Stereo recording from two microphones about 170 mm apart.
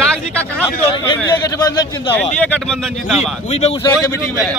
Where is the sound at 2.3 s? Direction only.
5° left (ahead or behind).